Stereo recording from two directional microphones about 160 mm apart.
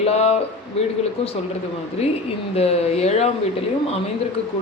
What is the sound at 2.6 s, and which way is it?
Speech, 40° left (ahead or behind).